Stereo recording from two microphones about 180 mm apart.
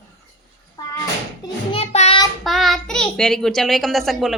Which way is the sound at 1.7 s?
35° left (ahead or behind).